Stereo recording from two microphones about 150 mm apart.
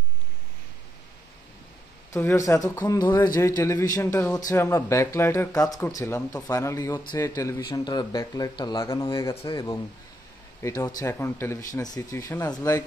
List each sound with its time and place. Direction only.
2.1 s speech: 20° left (ahead or behind)